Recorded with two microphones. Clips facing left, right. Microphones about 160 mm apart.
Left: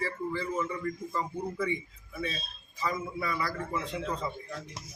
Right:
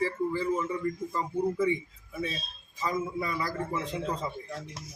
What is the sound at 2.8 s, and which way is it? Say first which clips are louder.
Speech: right 2 dB; 20° right (ahead or behind).